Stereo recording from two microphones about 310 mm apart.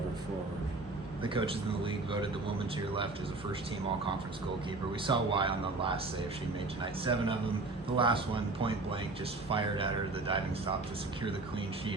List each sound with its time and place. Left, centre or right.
1.2 s a man's voice: centre
5.0 s a man's voice: centre
7.0 s a man's voice: centre